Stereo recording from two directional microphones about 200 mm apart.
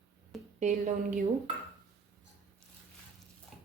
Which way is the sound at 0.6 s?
40° right (ahead or behind).